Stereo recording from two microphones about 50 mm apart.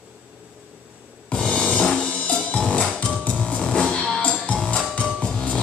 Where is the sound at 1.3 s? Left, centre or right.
Centre.